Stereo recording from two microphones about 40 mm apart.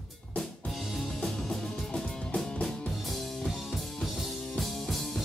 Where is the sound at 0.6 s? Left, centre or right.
Centre.